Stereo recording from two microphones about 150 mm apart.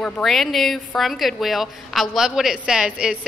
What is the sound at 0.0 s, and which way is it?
A woman's voice, centre (ahead or behind).